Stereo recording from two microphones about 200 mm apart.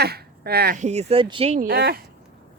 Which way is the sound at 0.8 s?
35° right (ahead or behind).